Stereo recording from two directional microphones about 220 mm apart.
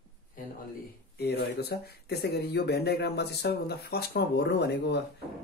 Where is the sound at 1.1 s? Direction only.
50° left (ahead or behind).